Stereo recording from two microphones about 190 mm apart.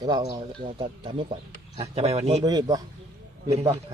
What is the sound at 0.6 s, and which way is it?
Speech, 45° right (ahead or behind).